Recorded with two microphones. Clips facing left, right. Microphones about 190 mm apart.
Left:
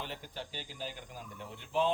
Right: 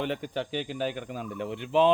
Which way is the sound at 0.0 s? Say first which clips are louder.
Right 12 dB; 70° right (ahead or behind).